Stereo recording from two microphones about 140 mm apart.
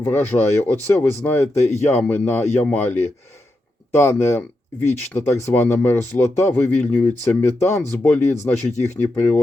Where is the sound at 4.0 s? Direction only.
20° left (ahead or behind).